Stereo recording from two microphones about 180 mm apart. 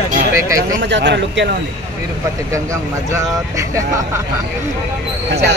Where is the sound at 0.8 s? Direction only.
75° right (ahead or behind).